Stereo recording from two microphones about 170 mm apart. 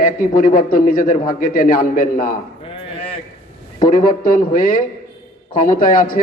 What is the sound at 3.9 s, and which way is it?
A man's voice, 55° left (ahead or behind).